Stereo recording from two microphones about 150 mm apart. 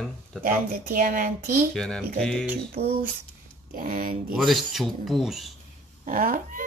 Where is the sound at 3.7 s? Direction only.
65° right (ahead or behind).